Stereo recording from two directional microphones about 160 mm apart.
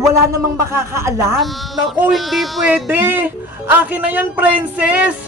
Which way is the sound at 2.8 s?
15° right (ahead or behind).